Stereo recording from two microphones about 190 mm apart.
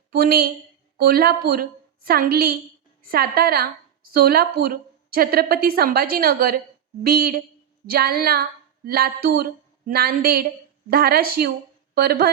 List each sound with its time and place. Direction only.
0.1 s a woman's voice: 55° right (ahead or behind)